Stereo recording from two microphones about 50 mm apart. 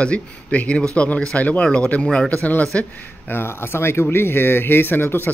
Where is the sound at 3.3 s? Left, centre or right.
Left.